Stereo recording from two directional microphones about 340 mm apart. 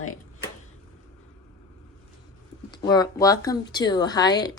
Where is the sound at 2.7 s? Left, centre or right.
Centre.